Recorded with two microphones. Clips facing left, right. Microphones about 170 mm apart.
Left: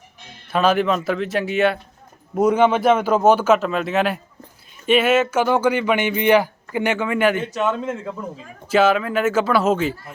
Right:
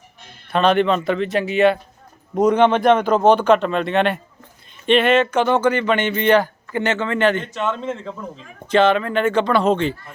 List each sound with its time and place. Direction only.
0.5 s speech: 5° left (ahead or behind)